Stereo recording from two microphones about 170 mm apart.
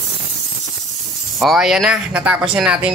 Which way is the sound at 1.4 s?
Centre (ahead or behind).